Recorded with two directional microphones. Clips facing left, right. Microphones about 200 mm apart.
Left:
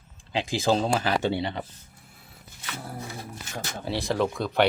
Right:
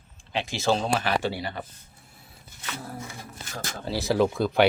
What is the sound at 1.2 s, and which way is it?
Speech, 25° left (ahead or behind).